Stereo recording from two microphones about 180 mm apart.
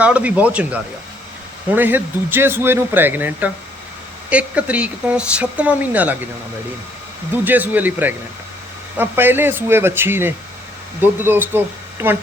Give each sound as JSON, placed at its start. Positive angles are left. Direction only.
{"t": 0.0, "sound": "speech", "side_deg": -5}
{"t": 7.4, "sound": "speech", "side_deg": -10}